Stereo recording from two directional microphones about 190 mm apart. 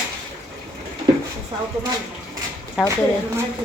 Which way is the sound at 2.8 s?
5° right (ahead or behind).